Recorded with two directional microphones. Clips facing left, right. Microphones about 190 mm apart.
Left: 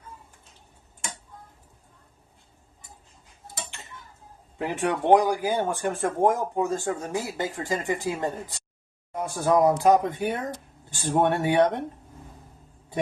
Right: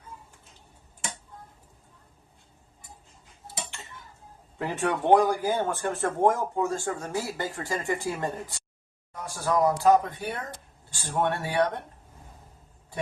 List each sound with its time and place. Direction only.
4.5 s speech: 15° left (ahead or behind)